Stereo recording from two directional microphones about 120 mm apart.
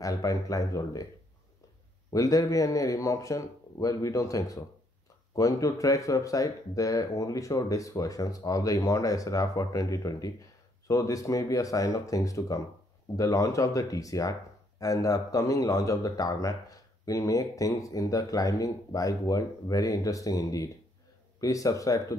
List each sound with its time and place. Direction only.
0.0 s a man's voice: 30° left (ahead or behind)
2.1 s a man's voice: 30° left (ahead or behind)